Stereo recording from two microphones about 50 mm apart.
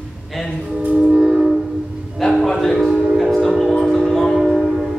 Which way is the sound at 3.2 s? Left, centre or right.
Centre.